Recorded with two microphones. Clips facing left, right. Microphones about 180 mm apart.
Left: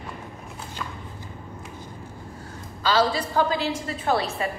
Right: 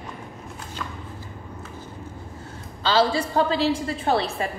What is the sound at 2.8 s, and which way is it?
A woman's voice, 30° right (ahead or behind).